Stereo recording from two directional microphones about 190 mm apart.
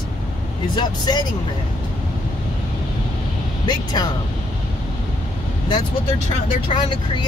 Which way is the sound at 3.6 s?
20° left (ahead or behind).